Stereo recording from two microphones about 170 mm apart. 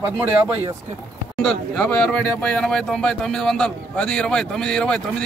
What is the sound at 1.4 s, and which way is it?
Speech, 5° left (ahead or behind).